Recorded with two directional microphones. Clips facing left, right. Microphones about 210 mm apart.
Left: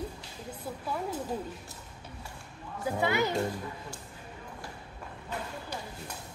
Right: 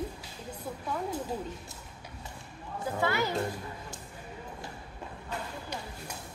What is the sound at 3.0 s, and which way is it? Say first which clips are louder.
Speech: left 1 dB; 15° left (ahead or behind).